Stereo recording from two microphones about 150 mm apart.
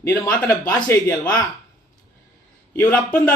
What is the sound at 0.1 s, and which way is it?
A man's voice, 20° left (ahead or behind).